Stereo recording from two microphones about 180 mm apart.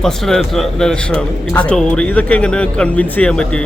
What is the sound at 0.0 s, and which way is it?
A man's voice, centre (ahead or behind).